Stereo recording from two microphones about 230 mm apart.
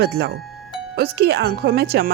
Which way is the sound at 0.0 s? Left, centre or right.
Right.